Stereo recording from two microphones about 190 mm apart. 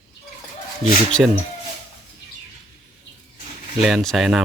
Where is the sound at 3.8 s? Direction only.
Centre (ahead or behind).